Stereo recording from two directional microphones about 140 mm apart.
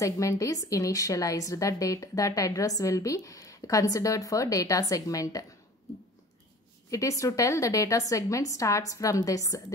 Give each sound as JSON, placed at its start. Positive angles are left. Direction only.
{"t": 0.0, "sound": "a woman's voice", "side_deg": 20}
{"t": 6.9, "sound": "a woman's voice", "side_deg": 25}